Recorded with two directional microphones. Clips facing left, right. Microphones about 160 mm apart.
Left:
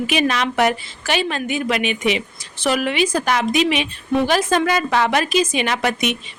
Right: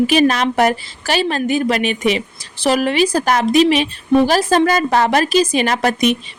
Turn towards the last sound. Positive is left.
turn(degrees=-35)  # may be behind; listen again after turning